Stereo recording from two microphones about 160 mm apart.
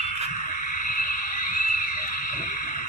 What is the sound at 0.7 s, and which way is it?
Frog, 60° left (ahead or behind).